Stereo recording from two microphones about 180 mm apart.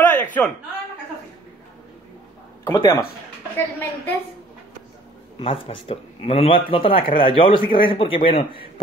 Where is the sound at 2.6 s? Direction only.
15° left (ahead or behind).